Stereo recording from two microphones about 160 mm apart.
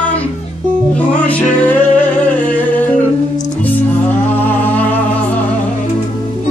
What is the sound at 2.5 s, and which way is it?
Singing, 10° left (ahead or behind).